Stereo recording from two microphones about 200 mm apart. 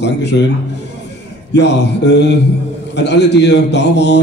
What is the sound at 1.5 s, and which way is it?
A man's voice, 60° left (ahead or behind).